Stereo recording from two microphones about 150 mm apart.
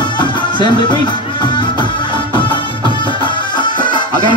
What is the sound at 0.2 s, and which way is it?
Music, 30° left (ahead or behind).